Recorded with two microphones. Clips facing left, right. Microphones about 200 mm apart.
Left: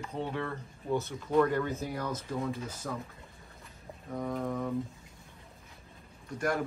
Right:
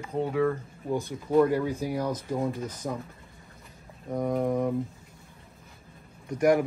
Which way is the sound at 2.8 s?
25° right (ahead or behind).